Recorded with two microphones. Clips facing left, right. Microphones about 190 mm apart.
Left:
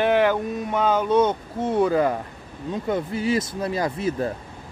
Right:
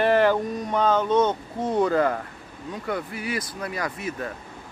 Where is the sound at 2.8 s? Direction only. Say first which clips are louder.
Left 6 dB; 25° left (ahead or behind).